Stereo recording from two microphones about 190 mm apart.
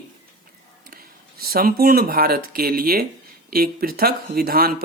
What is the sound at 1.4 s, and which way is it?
Speech, 50° right (ahead or behind).